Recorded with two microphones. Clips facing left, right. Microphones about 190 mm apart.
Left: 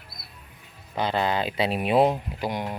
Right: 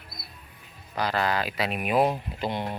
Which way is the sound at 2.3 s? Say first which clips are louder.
Left 1 dB; 10° left (ahead or behind).